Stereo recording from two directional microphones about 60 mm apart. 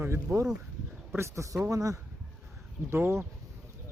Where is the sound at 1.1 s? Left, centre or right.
Right.